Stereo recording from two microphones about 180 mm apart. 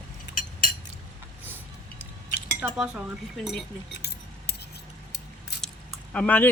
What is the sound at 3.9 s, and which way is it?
Keys jangling, 65° left (ahead or behind).